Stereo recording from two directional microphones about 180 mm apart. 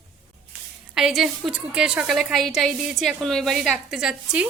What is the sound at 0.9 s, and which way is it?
A woman's voice, centre (ahead or behind).